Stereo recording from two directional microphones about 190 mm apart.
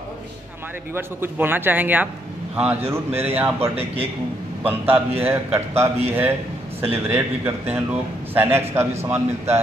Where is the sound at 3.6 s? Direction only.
30° right (ahead or behind).